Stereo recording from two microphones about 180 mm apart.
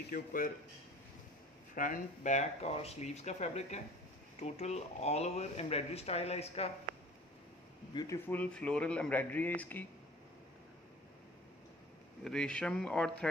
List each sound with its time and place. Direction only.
0.1 s speech: 50° left (ahead or behind)
1.8 s speech: 45° left (ahead or behind)
7.9 s speech: 25° left (ahead or behind)
8.3 s speech: 5° left (ahead or behind)
12.3 s speech: 5° left (ahead or behind)